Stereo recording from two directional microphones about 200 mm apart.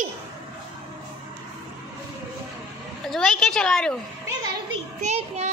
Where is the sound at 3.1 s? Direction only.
Centre (ahead or behind).